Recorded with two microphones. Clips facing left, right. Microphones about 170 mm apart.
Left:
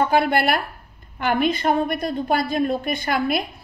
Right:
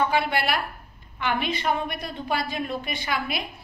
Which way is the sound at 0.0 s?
50° left (ahead or behind).